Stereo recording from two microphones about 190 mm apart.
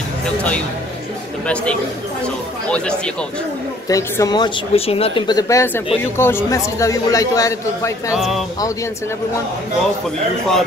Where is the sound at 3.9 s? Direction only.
20° left (ahead or behind).